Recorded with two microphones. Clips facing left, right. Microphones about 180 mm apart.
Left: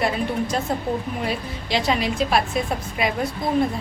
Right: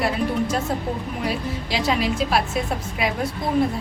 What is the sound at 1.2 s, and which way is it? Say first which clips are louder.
A woman's voice: right 1 dB; centre (ahead or behind).